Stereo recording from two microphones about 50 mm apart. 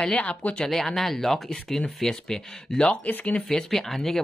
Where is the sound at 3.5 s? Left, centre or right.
Centre.